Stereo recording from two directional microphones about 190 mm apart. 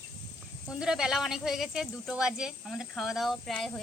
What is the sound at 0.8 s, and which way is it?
Speech, 5° right (ahead or behind).